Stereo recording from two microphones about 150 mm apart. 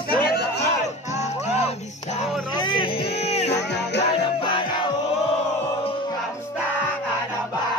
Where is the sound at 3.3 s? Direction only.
45° left (ahead or behind).